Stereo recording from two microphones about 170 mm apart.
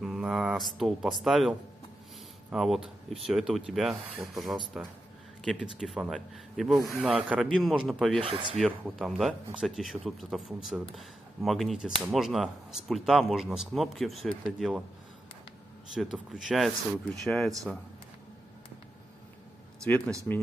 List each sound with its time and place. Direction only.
0.0 s speech: centre (ahead or behind)
2.5 s speech: centre (ahead or behind)
8.2 s speech: 30° right (ahead or behind)
8.8 s speech: centre (ahead or behind)
15.9 s speech: centre (ahead or behind)
20.3 s speech: 5° left (ahead or behind)